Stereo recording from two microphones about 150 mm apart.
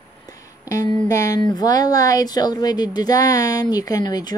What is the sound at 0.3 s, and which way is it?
Music, 25° left (ahead or behind).